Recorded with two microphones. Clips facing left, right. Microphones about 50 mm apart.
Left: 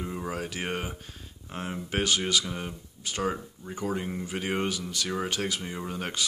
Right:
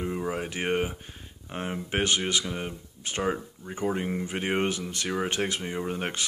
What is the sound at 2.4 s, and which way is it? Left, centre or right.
Speech, centre.